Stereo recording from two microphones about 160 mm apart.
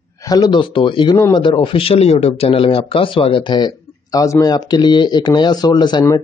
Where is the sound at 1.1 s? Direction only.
20° left (ahead or behind).